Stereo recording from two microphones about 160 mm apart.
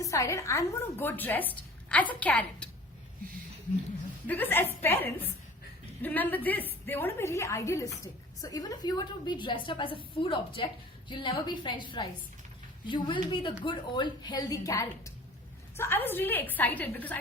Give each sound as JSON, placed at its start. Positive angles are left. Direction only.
{"t": 0.0, "sound": "a woman's voice", "side_deg": 20}
{"t": 4.3, "sound": "a woman's voice", "side_deg": 10}